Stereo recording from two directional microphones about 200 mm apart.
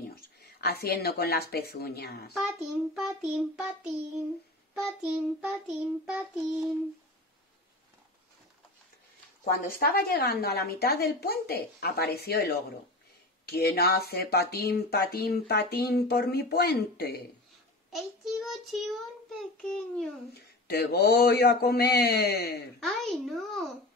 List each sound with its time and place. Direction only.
0.1 s speech: 50° left (ahead or behind)
2.3 s child singing: 5° right (ahead or behind)
9.4 s speech: 45° left (ahead or behind)
13.5 s speech: 50° left (ahead or behind)
17.9 s child singing: centre (ahead or behind)
20.6 s speech: 50° left (ahead or behind)
22.8 s child singing: centre (ahead or behind)